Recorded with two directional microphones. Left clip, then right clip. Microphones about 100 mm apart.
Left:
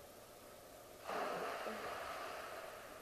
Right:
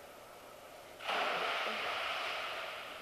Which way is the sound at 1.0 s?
20° right (ahead or behind).